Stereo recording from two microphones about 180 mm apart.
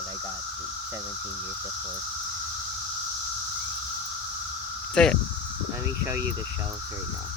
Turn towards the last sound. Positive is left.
turn(degrees=-15)  # may be behind; listen again after turning